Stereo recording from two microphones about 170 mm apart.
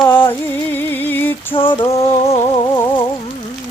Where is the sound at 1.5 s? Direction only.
30° left (ahead or behind).